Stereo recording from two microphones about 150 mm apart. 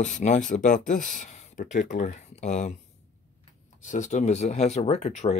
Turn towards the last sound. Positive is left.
turn(degrees=50)  # may be behind; listen again after turning